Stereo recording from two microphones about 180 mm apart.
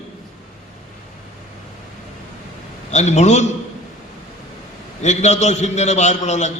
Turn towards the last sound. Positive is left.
turn(degrees=40)  # may be behind; listen again after turning